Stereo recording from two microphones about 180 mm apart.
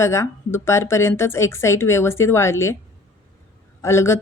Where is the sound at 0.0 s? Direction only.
15° left (ahead or behind).